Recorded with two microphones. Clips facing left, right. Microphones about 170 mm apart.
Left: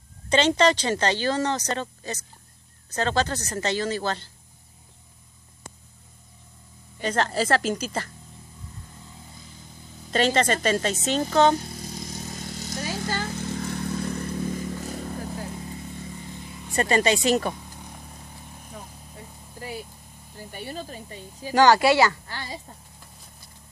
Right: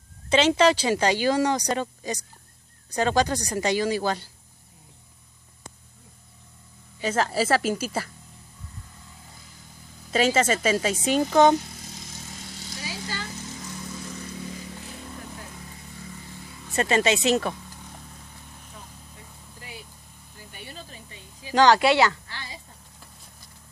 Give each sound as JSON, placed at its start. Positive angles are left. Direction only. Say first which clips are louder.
{"t": 0.3, "sound": "speech", "louder": "right 1 dB", "side_deg": -5}
{"t": 7.0, "sound": "speech", "louder": "even", "side_deg": -5}
{"t": 10.1, "sound": "speech", "louder": "even", "side_deg": -5}
{"t": 11.9, "sound": "vehicle", "louder": "left 7 dB", "side_deg": 40}
{"t": 16.7, "sound": "speech", "louder": "even", "side_deg": 0}
{"t": 18.7, "sound": "vehicle", "louder": "left 6 dB", "side_deg": 40}
{"t": 20.3, "sound": "speech", "louder": "left 8 dB", "side_deg": 40}
{"t": 21.5, "sound": "speech", "louder": "left 1 dB", "side_deg": 5}
{"t": 22.3, "sound": "a woman's voice", "louder": "left 5 dB", "side_deg": 40}